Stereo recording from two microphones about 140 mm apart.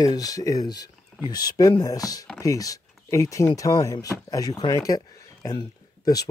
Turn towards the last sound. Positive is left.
turn(degrees=25)  # may be behind; listen again after turning